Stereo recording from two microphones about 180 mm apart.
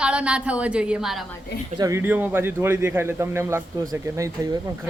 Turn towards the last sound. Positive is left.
turn(degrees=-20)  # may be behind; listen again after turning